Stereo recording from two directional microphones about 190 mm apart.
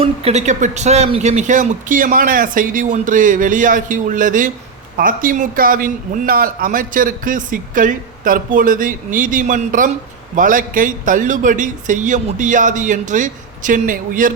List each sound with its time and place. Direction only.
0.0 s speech: 30° right (ahead or behind)